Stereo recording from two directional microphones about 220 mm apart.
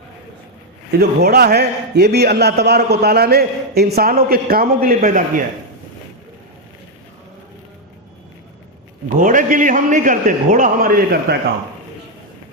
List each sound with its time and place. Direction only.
0.9 s a man's voice: 45° right (ahead or behind)
9.0 s a man's voice: 35° right (ahead or behind)